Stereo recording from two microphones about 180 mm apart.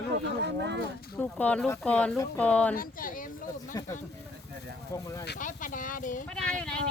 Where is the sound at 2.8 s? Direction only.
50° left (ahead or behind).